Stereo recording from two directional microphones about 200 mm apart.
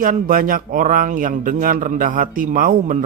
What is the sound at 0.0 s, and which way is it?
Speech, 45° right (ahead or behind).